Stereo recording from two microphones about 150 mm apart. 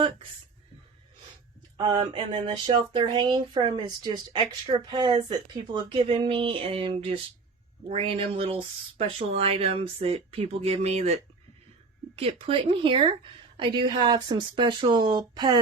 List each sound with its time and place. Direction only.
1.8 s speech: 30° right (ahead or behind)